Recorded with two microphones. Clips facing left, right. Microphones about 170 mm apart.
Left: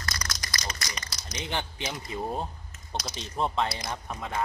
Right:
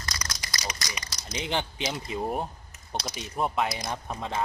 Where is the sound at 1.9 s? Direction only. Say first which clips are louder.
Right 2 dB; 20° right (ahead or behind).